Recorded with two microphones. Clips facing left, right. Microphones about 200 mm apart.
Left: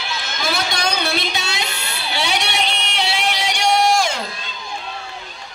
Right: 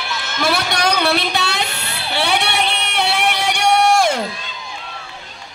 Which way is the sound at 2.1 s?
60° right (ahead or behind).